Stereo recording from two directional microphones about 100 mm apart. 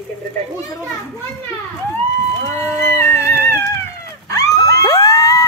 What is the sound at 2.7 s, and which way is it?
Cat, 25° left (ahead or behind).